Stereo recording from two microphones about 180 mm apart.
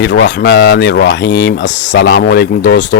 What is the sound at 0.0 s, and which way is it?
Speech, 80° left.